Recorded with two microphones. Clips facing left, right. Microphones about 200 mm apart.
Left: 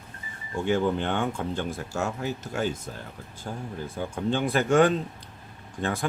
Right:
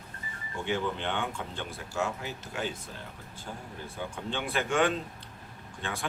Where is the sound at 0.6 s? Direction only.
45° left (ahead or behind).